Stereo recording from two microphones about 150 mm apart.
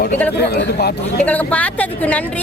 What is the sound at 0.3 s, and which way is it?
Speech, 90° left.